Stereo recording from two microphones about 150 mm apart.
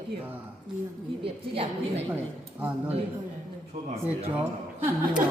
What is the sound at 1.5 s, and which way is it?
Speech, 40° right (ahead or behind).